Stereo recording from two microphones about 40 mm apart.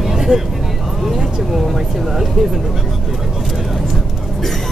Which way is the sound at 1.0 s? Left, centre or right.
Centre.